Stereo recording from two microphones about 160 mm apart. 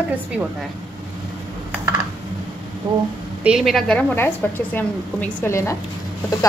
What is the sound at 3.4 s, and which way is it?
A woman's voice, 5° right (ahead or behind).